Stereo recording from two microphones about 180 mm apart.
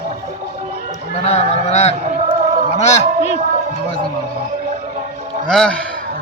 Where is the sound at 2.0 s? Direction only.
40° right (ahead or behind).